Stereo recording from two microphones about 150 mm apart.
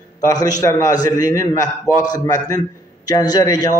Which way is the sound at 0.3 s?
25° left (ahead or behind).